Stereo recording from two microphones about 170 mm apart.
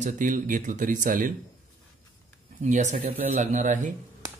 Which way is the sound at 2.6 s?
45° right (ahead or behind).